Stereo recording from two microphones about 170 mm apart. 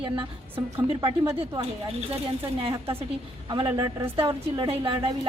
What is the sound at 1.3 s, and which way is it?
Speech, 35° right (ahead or behind).